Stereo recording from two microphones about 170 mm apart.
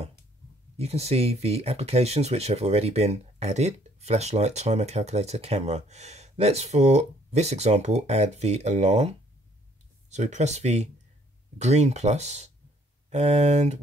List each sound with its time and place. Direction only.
0.7 s speech: 40° right (ahead or behind)